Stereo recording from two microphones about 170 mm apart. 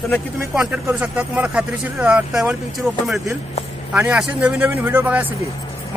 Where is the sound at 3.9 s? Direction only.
5° right (ahead or behind).